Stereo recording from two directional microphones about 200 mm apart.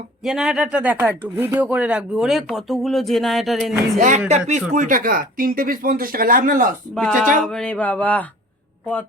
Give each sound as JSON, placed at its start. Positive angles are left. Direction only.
{"t": 0.3, "sound": "speech", "side_deg": 0}
{"t": 3.9, "sound": "speech", "side_deg": -40}
{"t": 6.9, "sound": "speech", "side_deg": 0}
{"t": 7.4, "sound": "a sound", "side_deg": 5}